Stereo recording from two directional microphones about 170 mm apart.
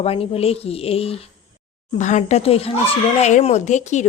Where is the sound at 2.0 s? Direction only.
45° left (ahead or behind).